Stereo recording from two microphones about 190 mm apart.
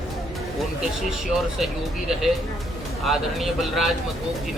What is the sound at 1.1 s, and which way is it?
A man's voice, centre (ahead or behind).